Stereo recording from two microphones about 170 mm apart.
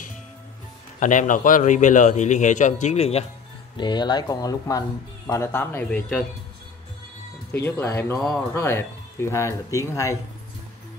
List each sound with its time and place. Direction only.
0.9 s a man's voice: 50° left (ahead or behind)
3.7 s speech: 25° left (ahead or behind); by 6.2 s 10° left (ahead or behind)
7.8 s speech: 15° left (ahead or behind)